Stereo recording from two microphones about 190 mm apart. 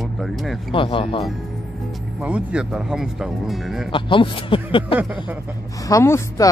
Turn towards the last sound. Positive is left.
turn(degrees=15)  # may be behind; listen again after turning